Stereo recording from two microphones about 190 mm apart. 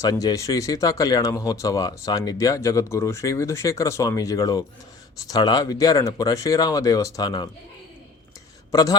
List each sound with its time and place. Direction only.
0.0 s speech: 20° left (ahead or behind)
8.7 s a man's voice: 20° left (ahead or behind)